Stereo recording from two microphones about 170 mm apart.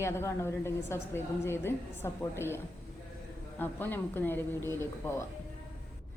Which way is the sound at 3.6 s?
10° left (ahead or behind).